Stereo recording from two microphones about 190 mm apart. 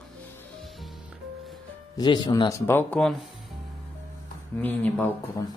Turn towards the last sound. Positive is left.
turn(degrees=15)  # may be behind; listen again after turning